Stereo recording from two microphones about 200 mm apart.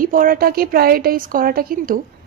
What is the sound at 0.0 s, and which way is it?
A woman's voice, 45° right (ahead or behind).